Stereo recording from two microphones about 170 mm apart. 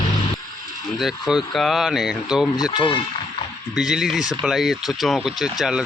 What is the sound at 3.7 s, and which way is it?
Speech, 5° right (ahead or behind).